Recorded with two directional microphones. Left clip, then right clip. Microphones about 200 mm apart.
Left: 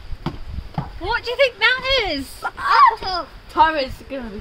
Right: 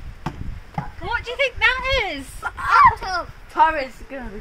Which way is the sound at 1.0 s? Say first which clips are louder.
Left 4 dB; 55° left (ahead or behind).